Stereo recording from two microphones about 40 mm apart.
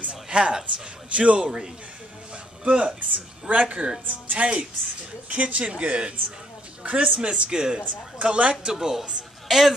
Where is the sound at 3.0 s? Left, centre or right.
Right.